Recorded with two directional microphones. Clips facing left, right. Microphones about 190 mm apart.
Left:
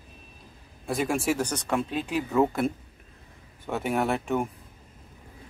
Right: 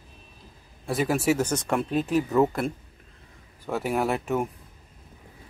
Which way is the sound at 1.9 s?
40° right (ahead or behind).